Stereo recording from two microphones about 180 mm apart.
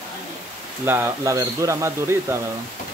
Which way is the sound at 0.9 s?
15° right (ahead or behind).